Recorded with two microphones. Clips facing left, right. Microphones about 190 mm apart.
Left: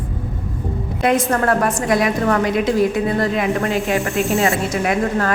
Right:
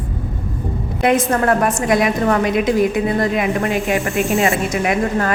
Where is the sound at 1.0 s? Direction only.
20° right (ahead or behind).